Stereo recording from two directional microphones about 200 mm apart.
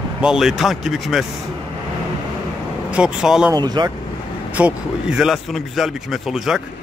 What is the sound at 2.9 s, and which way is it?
Speech, 5° right (ahead or behind).